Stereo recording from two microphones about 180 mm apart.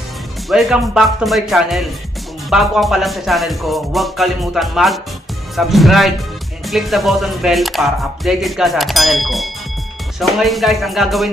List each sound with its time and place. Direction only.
0.5 s speech: centre (ahead or behind)